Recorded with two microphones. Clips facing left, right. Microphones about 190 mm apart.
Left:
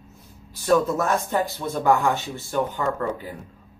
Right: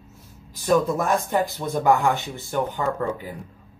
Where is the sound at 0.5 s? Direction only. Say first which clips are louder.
Even; 15° right (ahead or behind).